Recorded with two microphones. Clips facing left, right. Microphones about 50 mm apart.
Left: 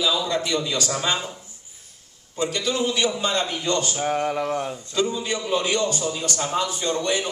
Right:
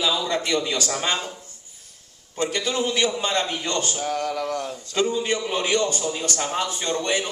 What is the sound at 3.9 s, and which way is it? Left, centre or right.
Speech, left.